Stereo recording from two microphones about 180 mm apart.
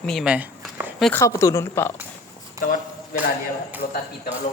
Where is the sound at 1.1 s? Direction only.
15° left (ahead or behind).